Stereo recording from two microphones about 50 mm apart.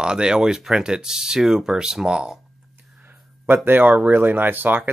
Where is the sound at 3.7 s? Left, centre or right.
Right.